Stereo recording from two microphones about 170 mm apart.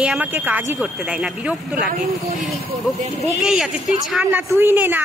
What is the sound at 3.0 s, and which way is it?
Speech, 40° right (ahead or behind).